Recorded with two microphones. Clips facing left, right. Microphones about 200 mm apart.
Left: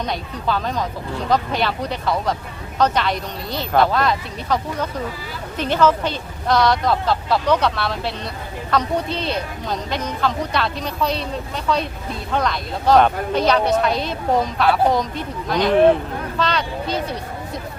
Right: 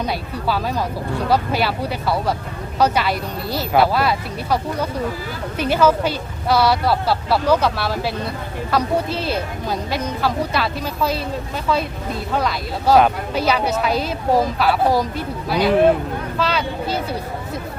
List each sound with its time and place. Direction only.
0.0 s speech: 5° right (ahead or behind)
12.3 s speech: 5° right (ahead or behind)